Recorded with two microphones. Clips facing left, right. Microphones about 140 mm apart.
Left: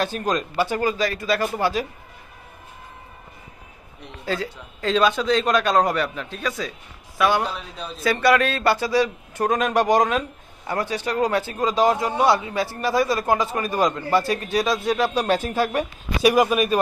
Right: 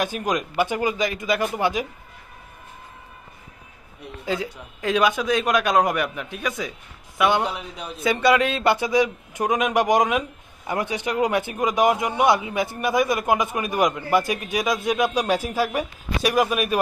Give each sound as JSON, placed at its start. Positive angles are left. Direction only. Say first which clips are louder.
{"t": 0.0, "sound": "a man's voice", "louder": "left 1 dB", "side_deg": -15}
{"t": 4.3, "sound": "a man's voice", "louder": "even", "side_deg": -15}